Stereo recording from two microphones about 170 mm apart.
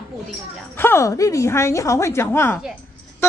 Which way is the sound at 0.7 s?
15° left (ahead or behind).